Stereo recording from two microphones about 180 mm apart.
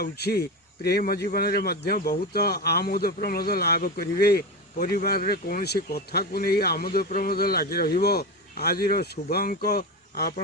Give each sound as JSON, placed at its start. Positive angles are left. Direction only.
{"t": 0.0, "sound": "speech", "side_deg": 60}